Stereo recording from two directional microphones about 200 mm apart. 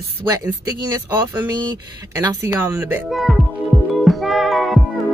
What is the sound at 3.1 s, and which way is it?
Music, centre (ahead or behind).